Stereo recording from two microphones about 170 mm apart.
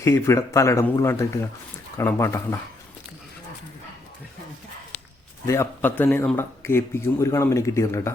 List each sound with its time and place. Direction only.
0.0 s a man's voice: 15° left (ahead or behind)
5.5 s a man's voice: 15° left (ahead or behind)